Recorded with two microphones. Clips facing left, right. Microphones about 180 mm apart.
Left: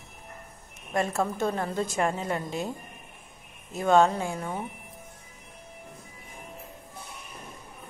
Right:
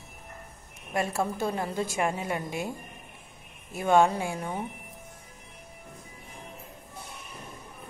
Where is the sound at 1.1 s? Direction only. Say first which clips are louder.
Left 1 dB; 10° right (ahead or behind).